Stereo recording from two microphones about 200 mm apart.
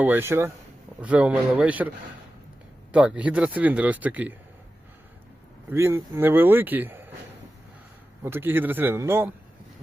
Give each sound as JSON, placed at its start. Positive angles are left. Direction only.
{"t": 0.0, "sound": "speech", "side_deg": -10}
{"t": 2.9, "sound": "speech", "side_deg": -5}
{"t": 5.7, "sound": "speech", "side_deg": -15}
{"t": 8.2, "sound": "speech", "side_deg": -10}